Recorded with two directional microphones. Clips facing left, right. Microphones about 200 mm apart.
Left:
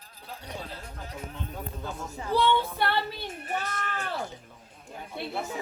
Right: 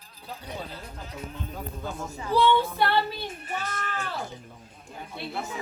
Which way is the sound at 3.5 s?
60° left (ahead or behind).